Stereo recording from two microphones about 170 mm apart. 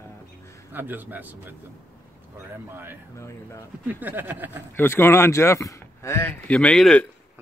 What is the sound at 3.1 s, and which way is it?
Speech, 15° left (ahead or behind).